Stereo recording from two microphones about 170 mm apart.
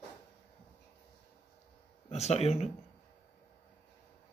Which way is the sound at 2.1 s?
40° left (ahead or behind).